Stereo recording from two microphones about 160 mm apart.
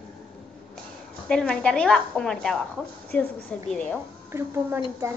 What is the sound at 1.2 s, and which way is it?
A child's voice, 5° left (ahead or behind).